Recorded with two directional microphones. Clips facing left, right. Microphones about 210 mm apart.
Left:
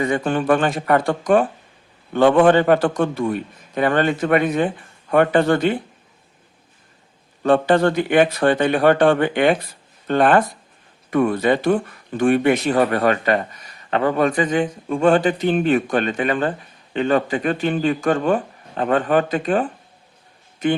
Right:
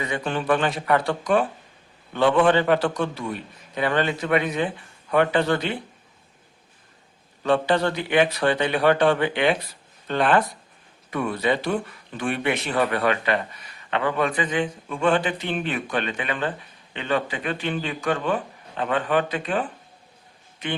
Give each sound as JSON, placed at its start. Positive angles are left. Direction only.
{"t": 0.0, "sound": "speech", "side_deg": 50}
{"t": 7.4, "sound": "a man's voice", "side_deg": 50}